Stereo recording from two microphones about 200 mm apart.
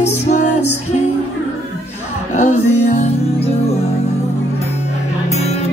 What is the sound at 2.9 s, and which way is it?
Music, 35° left (ahead or behind).